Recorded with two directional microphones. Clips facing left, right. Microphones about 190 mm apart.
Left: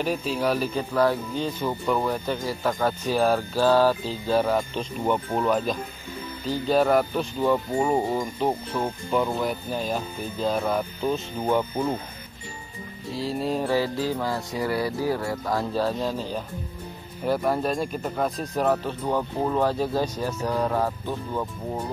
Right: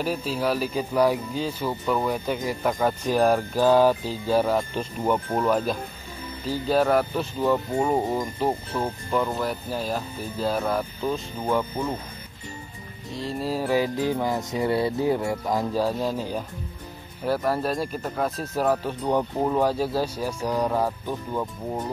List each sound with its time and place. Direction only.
0.3 s speech: 5° right (ahead or behind)
10.7 s speech: 10° left (ahead or behind)
13.1 s speech: centre (ahead or behind)
13.7 s speech: 15° right (ahead or behind)
17.2 s speech: centre (ahead or behind)